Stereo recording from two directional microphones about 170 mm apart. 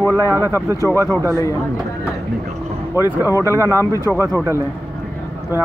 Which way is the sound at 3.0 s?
20° left (ahead or behind).